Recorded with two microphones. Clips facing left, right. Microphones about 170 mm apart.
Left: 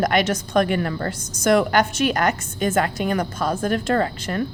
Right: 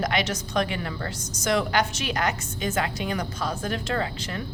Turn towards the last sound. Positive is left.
turn(degrees=50)  # may be behind; listen again after turning